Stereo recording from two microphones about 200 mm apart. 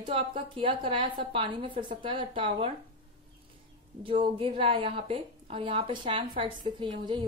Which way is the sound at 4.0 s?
25° right (ahead or behind).